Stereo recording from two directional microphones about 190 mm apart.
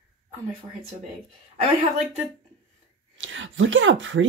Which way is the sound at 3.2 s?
85° right.